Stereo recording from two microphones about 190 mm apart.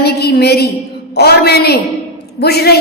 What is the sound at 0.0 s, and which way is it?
A woman's voice, 55° left (ahead or behind).